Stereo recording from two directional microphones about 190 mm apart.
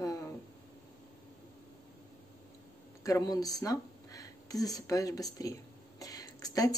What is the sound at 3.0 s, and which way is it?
Speech, 20° left (ahead or behind).